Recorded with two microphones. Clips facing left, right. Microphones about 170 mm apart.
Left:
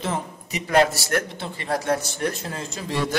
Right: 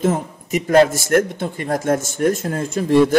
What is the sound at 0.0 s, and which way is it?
A man's voice, 45° right (ahead or behind).